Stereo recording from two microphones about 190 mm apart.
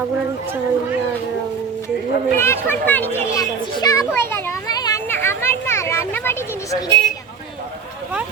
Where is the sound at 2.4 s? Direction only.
10° left (ahead or behind).